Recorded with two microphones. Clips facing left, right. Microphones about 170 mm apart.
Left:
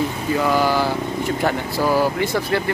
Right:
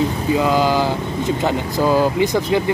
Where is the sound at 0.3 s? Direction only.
15° right (ahead or behind).